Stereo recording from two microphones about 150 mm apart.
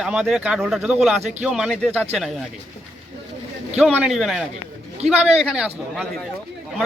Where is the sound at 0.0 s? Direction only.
5° right (ahead or behind).